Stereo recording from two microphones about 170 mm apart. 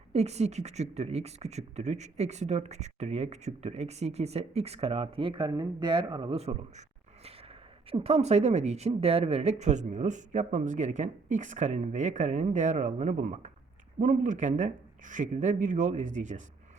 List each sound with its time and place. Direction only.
0.1 s speech: 40° right (ahead or behind)
7.3 s a sound: 35° right (ahead or behind)
8.9 s speech: 35° right (ahead or behind)